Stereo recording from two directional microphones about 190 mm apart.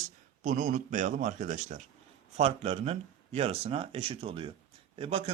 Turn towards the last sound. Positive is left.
turn(degrees=-30)  # may be behind; listen again after turning